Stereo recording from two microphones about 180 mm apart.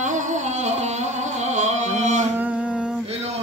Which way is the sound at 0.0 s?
45° right (ahead or behind).